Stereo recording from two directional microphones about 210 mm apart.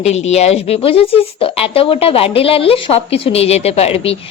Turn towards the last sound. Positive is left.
turn(degrees=30)  # may be behind; listen again after turning